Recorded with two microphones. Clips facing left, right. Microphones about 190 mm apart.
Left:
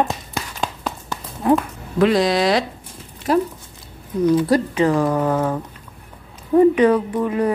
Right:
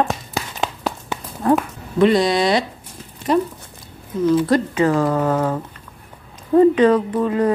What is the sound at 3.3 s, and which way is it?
Dog, 5° left (ahead or behind).